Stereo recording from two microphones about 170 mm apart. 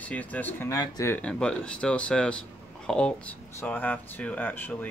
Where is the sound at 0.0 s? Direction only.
10° left (ahead or behind).